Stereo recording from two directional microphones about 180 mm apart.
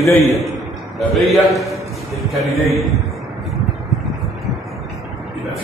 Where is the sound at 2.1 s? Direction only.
Centre (ahead or behind).